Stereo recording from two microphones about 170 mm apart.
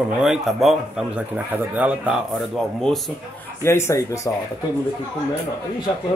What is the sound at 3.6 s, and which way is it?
Speech, 15° left (ahead or behind).